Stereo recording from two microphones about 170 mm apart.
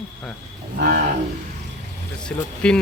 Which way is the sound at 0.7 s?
60° right (ahead or behind).